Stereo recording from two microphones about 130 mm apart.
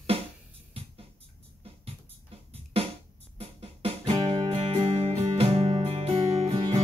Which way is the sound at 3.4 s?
50° right (ahead or behind).